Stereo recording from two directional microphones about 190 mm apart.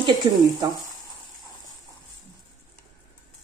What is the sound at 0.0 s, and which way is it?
Speech, 25° right (ahead or behind).